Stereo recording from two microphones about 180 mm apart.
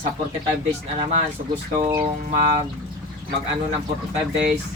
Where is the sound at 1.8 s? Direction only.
20° right (ahead or behind).